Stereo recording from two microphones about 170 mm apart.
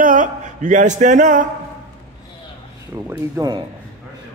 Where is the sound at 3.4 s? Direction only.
15° right (ahead or behind).